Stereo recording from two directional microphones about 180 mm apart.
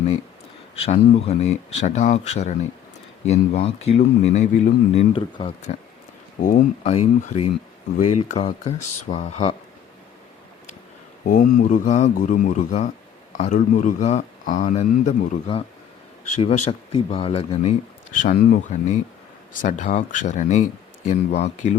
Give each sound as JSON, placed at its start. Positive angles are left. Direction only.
{"t": 0.9, "sound": "a man's voice", "side_deg": 35}
{"t": 6.4, "sound": "a man's voice", "side_deg": 45}
{"t": 11.3, "sound": "a man's voice", "side_deg": 50}
{"t": 18.2, "sound": "a man's voice", "side_deg": 50}